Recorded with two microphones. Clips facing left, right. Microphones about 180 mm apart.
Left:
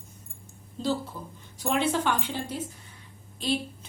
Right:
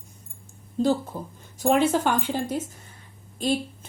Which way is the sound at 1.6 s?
45° right (ahead or behind).